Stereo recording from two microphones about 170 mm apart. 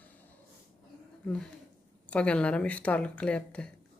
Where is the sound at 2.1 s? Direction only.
5° left (ahead or behind).